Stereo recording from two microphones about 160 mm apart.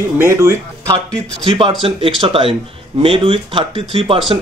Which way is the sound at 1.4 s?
35° right (ahead or behind).